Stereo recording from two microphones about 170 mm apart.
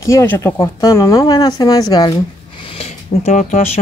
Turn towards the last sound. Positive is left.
turn(degrees=40)  # may be behind; listen again after turning